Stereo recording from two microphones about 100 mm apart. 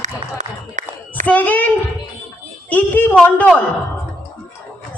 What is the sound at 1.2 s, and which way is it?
Speech, 15° left (ahead or behind).